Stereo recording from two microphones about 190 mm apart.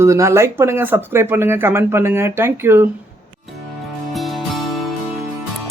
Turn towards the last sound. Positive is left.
turn(degrees=0)  # may be behind; listen again after turning